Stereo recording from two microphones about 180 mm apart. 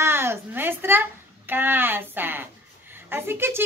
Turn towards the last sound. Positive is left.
turn(degrees=-15)  # may be behind; listen again after turning